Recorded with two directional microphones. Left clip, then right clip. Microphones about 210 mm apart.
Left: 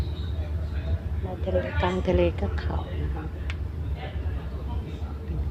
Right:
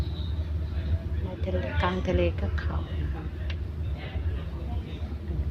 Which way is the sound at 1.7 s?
5° right (ahead or behind).